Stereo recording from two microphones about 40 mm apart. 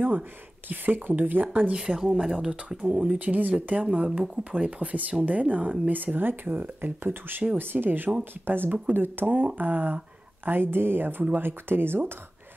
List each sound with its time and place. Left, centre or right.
0.7 s speech: right
1.7 s speech: centre
2.9 s speech: right
3.8 s speech: right
8.6 s speech: right
8.9 s speech: right
10.4 s speech: right